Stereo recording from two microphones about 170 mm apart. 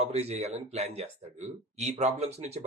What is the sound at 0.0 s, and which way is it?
A man's voice, 40° right (ahead or behind).